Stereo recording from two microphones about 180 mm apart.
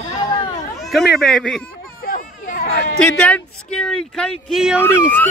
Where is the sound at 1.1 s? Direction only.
5° left (ahead or behind).